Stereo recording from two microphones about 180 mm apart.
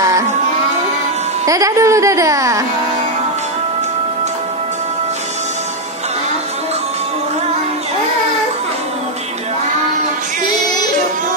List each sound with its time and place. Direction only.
1.4 s speech: 20° right (ahead or behind)